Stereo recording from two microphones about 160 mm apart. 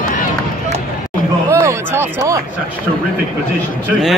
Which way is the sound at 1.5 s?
15° right (ahead or behind).